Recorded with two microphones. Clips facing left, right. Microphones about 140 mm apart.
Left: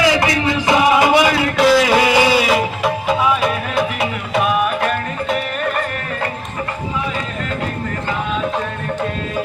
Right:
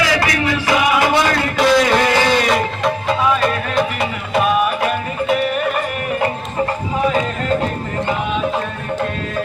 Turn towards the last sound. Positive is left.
turn(degrees=-45)  # may be behind; listen again after turning